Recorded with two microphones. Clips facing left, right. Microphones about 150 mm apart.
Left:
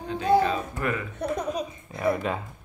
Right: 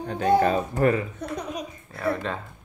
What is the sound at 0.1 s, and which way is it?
Speech, 50° right (ahead or behind).